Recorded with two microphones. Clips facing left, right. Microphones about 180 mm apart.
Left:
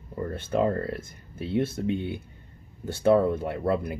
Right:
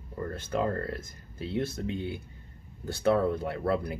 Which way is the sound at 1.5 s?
20° left (ahead or behind).